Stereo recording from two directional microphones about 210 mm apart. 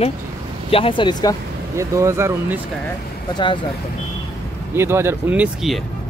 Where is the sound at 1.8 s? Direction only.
15° right (ahead or behind).